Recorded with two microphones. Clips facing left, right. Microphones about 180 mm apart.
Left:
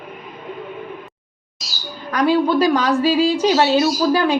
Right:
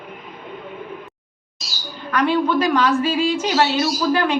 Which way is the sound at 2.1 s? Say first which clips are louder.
Left 2 dB; 35° left (ahead or behind).